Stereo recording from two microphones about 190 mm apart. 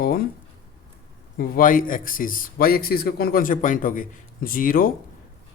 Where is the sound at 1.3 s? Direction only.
50° left (ahead or behind).